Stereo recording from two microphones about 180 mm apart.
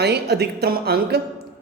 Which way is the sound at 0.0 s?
65° right (ahead or behind).